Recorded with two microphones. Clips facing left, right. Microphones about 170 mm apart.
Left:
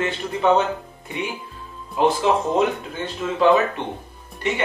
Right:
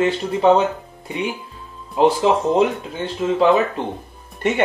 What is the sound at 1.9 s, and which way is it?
Speech, 30° right (ahead or behind).